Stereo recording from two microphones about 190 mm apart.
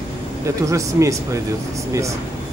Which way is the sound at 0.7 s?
15° right (ahead or behind).